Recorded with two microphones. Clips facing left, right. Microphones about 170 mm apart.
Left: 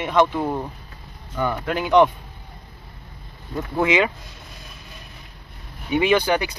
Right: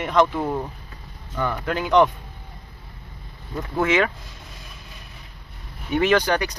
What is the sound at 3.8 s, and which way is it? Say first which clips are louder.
Speech: left 1 dB; 15° left (ahead or behind).